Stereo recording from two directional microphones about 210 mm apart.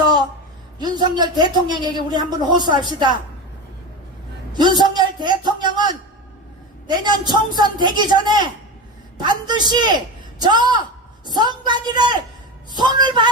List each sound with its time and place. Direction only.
0.8 s speech: 20° right (ahead or behind)
4.5 s a man's voice: 20° right (ahead or behind)